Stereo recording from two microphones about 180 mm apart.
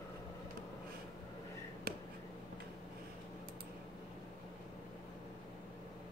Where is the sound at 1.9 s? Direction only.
60° right (ahead or behind).